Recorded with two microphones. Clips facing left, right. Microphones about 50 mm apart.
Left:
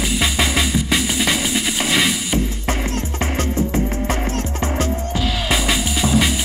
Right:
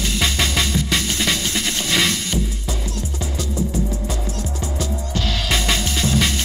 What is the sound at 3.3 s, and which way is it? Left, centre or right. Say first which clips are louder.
Music: left 3 dB; left.